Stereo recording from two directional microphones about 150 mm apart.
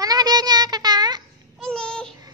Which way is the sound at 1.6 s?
5° left (ahead or behind).